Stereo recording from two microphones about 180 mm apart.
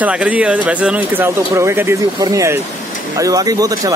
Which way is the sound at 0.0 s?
5° right (ahead or behind).